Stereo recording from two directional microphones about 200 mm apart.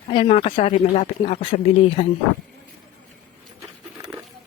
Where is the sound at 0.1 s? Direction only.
25° left (ahead or behind).